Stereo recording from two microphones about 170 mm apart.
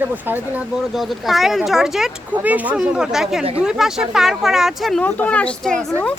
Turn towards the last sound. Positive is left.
turn(degrees=5)  # may be behind; listen again after turning